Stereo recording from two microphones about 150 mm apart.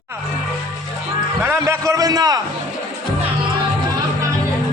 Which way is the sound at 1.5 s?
20° right (ahead or behind).